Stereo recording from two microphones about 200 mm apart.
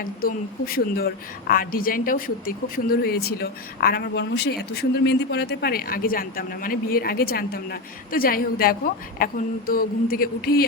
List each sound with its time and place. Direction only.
0.0 s a woman's voice: 45° left (ahead or behind)